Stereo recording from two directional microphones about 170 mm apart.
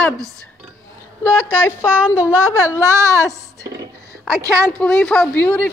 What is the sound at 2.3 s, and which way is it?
Speech, 15° right (ahead or behind).